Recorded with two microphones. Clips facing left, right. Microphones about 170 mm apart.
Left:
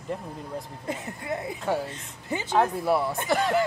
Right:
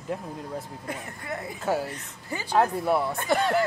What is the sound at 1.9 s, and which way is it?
Speech, 20° left (ahead or behind).